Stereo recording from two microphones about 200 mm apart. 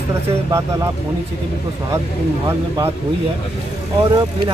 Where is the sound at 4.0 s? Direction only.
25° right (ahead or behind).